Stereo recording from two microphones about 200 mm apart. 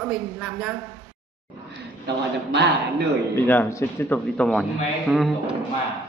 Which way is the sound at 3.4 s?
10° left (ahead or behind).